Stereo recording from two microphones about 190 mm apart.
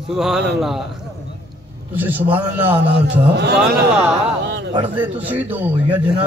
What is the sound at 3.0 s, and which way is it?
Speech, 60° right (ahead or behind).